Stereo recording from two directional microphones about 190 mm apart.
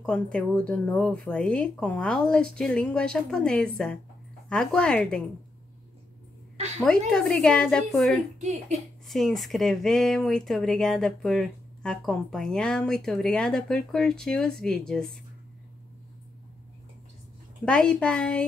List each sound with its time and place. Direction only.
0.0 s speech: 5° left (ahead or behind)
7.1 s speech: 5° left (ahead or behind)
8.4 s a woman's voice: 40° right (ahead or behind)
9.0 s speech: centre (ahead or behind)
17.6 s speech: 5° left (ahead or behind)